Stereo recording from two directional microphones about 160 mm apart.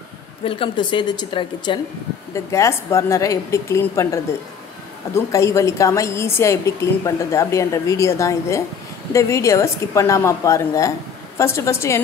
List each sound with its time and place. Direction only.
0.5 s a woman's voice: 30° left (ahead or behind)
2.3 s a woman's voice: 20° left (ahead or behind)